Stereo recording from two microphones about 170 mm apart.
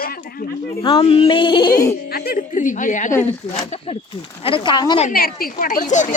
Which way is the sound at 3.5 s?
40° left (ahead or behind).